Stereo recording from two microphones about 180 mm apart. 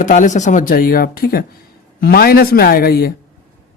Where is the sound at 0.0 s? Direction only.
45° left (ahead or behind).